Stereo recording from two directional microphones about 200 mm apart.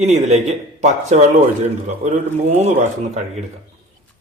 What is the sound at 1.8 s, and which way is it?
A man's voice, 35° right (ahead or behind).